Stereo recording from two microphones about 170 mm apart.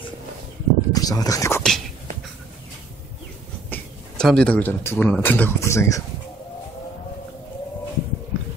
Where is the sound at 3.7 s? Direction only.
5° left (ahead or behind).